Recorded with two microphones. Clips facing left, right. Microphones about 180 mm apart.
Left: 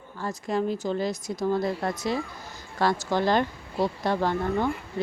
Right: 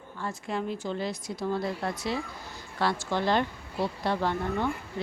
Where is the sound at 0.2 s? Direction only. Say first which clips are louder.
Left 5 dB; 40° left (ahead or behind).